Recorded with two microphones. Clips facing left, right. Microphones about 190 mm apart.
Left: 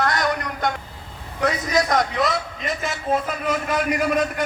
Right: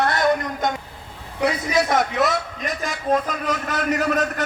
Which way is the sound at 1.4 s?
10° right (ahead or behind).